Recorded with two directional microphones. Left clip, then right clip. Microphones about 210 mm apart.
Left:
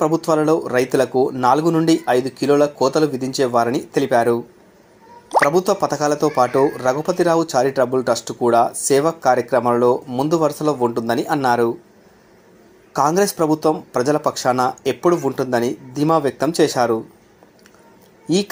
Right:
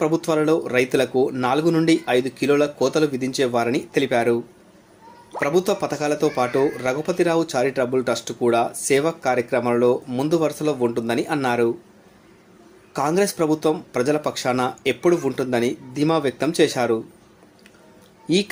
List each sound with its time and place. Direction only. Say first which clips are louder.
0.0 s speech: left 3 dB; 5° left (ahead or behind)
5.5 s speech: left 4 dB; 5° left (ahead or behind)
12.9 s speech: left 4 dB; 5° left (ahead or behind)